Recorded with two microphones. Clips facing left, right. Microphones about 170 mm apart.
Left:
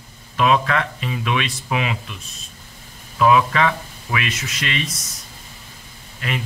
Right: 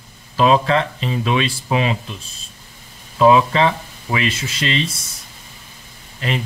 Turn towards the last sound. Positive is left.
turn(degrees=-30)  # may be behind; listen again after turning